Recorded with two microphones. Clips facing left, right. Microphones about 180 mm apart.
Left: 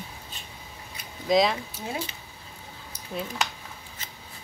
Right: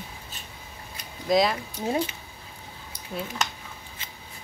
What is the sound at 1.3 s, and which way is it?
Speech, centre (ahead or behind).